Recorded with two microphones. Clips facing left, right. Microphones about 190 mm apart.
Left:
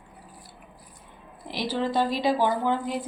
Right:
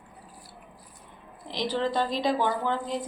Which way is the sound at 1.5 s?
5° left (ahead or behind).